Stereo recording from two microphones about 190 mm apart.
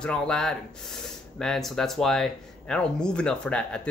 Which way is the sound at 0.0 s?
5° left (ahead or behind).